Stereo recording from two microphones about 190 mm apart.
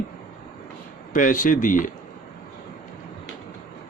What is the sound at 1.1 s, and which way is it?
Speech, 45° left (ahead or behind).